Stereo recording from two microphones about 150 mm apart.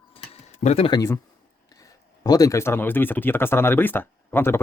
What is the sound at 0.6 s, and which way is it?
Speech, 45° left (ahead or behind).